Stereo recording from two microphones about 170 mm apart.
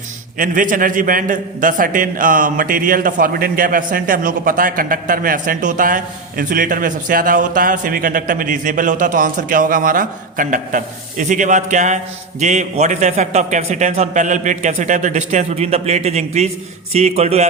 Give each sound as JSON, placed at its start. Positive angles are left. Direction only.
{"t": 0.3, "sound": "a man's voice", "side_deg": -50}